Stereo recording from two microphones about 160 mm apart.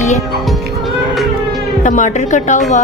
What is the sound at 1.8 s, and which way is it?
Speech, 50° left (ahead or behind).